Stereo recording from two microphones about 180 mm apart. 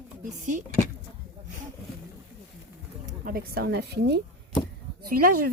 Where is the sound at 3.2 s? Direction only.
55° right (ahead or behind).